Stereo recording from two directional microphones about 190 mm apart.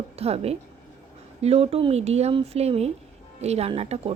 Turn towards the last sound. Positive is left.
turn(degrees=-30)  # may be behind; listen again after turning